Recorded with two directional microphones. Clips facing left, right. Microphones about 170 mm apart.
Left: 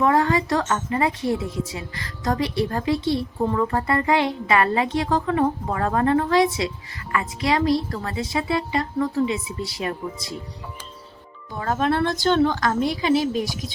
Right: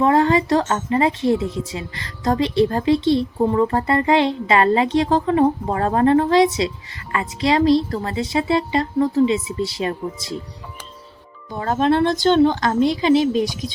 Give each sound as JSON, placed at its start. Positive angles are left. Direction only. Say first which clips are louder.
{"t": 0.0, "sound": "speech", "louder": "right 3 dB", "side_deg": -25}
{"t": 11.5, "sound": "speech", "louder": "right 4 dB", "side_deg": -25}